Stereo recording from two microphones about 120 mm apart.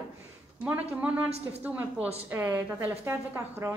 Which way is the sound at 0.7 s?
15° right (ahead or behind).